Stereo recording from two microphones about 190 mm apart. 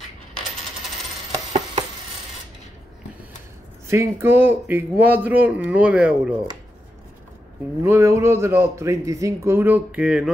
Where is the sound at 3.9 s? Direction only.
15° right (ahead or behind).